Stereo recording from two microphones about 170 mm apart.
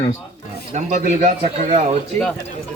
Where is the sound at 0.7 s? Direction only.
45° right (ahead or behind).